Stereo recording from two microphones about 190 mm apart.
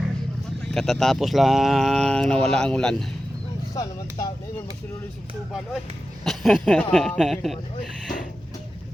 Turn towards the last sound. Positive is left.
turn(degrees=0)  # may be behind; listen again after turning